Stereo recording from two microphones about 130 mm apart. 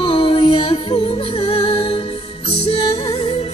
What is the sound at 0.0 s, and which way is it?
Music, 45° left (ahead or behind).